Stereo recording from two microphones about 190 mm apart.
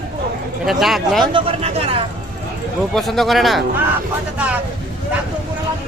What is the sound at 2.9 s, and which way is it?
Speech, centre (ahead or behind).